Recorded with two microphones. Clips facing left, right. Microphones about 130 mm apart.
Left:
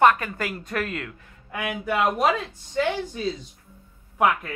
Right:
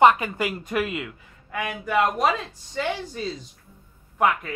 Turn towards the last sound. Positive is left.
turn(degrees=0)  # may be behind; listen again after turning